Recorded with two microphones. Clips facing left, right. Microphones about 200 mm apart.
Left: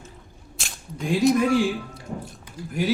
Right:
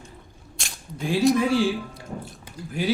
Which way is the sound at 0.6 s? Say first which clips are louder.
Left 1 dB; centre (ahead or behind).